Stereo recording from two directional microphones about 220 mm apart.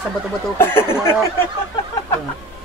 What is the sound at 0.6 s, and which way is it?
Speech, 10° left (ahead or behind).